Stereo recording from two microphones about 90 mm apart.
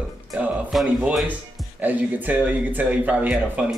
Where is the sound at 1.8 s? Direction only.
20° right (ahead or behind).